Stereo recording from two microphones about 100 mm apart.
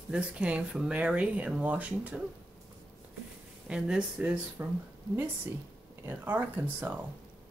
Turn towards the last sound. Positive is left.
turn(degrees=-20)  # may be behind; listen again after turning